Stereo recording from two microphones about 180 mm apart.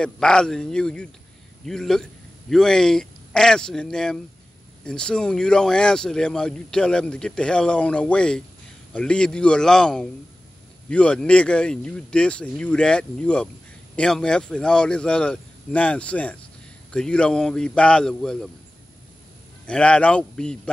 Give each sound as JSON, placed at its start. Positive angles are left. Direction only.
{"t": 0.0, "sound": "speech", "side_deg": 5}
{"t": 19.6, "sound": "speech", "side_deg": 5}